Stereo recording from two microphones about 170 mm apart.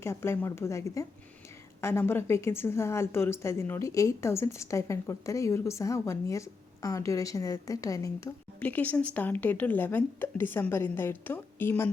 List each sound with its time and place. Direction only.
0.0 s a woman's voice: 15° left (ahead or behind)
8.6 s a woman's voice: 10° left (ahead or behind)